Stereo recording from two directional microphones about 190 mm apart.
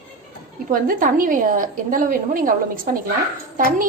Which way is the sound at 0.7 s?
45° right (ahead or behind).